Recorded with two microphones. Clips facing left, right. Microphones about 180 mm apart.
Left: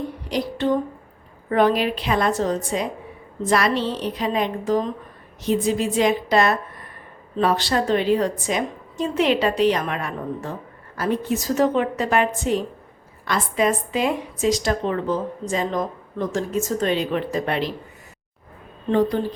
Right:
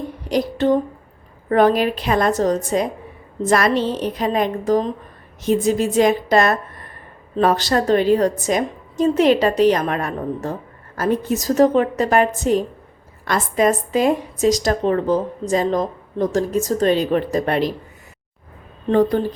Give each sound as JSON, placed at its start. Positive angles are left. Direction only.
{"t": 0.3, "sound": "a sound", "side_deg": -45}
{"t": 1.5, "sound": "a woman's voice", "side_deg": -45}
{"t": 19.1, "sound": "a woman's voice", "side_deg": -45}